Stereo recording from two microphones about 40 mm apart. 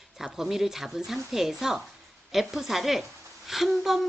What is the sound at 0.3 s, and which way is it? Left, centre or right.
Speech, centre.